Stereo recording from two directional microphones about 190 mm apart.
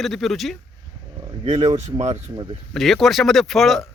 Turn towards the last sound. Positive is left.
turn(degrees=0)  # may be behind; listen again after turning